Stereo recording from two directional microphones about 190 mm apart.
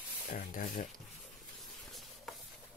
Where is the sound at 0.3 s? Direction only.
45° left (ahead or behind).